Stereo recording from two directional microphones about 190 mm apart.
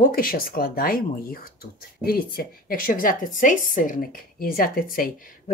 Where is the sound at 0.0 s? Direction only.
50° left (ahead or behind).